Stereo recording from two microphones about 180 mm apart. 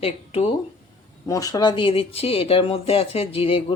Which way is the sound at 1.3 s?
20° left (ahead or behind).